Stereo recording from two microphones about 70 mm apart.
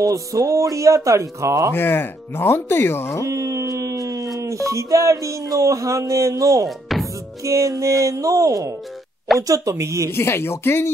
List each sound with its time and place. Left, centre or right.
0.0 s speech: right
1.7 s speech: left
3.3 s speech: right
6.9 s music: centre
7.4 s speech: right
10.1 s speech: left